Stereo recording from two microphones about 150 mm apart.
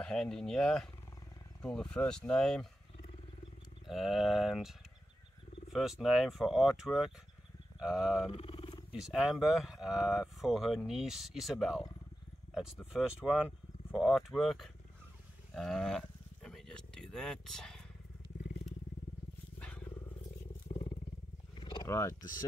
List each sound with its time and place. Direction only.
0.0 s speech: 5° left (ahead or behind)
3.8 s speech: centre (ahead or behind)
8.3 s wild animals: 40° left (ahead or behind)
8.9 s speech: centre (ahead or behind)
12.9 s speech: 5° right (ahead or behind)
15.5 s a sound: centre (ahead or behind)
19.6 s vehicle: 10° left (ahead or behind)
20.6 s wild animals: 45° left (ahead or behind)
21.5 s wild animals: 30° left (ahead or behind)
21.8 s speech: 20° left (ahead or behind)